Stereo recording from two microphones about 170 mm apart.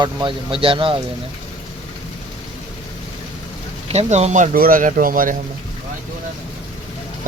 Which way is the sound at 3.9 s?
40° right (ahead or behind).